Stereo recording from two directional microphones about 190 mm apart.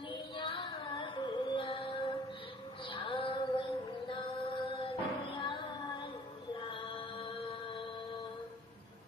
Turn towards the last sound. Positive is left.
turn(degrees=25)  # may be behind; listen again after turning